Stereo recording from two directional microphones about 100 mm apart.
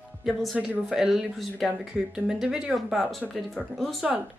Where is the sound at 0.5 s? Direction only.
15° right (ahead or behind); by 4.0 s centre (ahead or behind).